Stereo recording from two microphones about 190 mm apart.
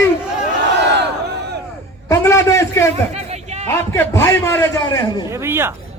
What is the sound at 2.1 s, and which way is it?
Speech, 15° left (ahead or behind).